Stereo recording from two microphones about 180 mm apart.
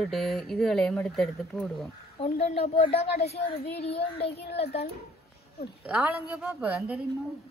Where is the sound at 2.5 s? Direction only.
30° left (ahead or behind).